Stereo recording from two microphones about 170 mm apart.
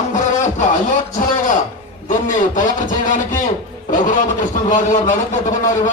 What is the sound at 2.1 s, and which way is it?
A man's voice, 50° left (ahead or behind).